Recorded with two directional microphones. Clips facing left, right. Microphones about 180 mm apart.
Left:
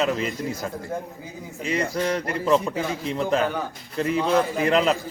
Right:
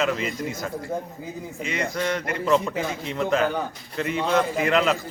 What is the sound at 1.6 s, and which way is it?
A man's voice, 35° left (ahead or behind).